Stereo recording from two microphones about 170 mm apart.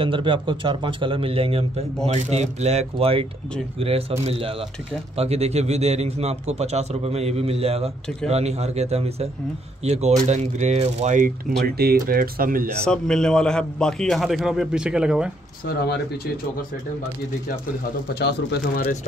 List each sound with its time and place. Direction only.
0.0 s a man's voice: 30° right (ahead or behind); by 11.3 s 45° right (ahead or behind)
11.5 s speech: 65° right (ahead or behind)
12.8 s a man's voice: 5° left (ahead or behind)
15.6 s speech: 65° left (ahead or behind)
18.2 s speech: 75° left (ahead or behind)